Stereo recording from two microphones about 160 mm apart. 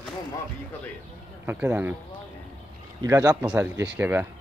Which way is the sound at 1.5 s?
10° right (ahead or behind).